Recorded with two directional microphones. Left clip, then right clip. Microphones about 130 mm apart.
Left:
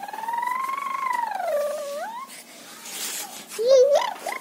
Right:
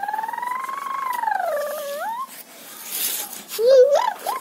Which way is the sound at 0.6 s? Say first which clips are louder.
Even; 25° left (ahead or behind).